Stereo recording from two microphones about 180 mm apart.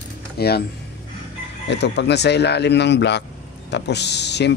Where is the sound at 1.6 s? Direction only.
70° left (ahead or behind).